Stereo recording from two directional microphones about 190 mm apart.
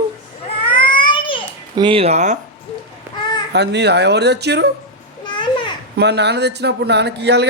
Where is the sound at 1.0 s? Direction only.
25° left (ahead or behind).